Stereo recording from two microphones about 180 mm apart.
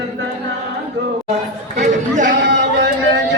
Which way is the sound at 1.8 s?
45° right (ahead or behind).